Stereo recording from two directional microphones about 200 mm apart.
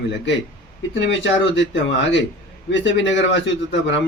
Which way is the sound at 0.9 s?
65° left (ahead or behind).